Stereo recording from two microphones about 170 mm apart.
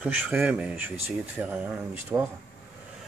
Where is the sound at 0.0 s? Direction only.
10° right (ahead or behind).